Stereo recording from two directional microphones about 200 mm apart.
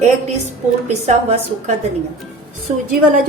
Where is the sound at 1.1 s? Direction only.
35° right (ahead or behind).